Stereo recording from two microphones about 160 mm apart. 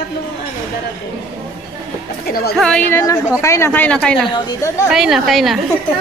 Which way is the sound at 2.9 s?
20° left (ahead or behind).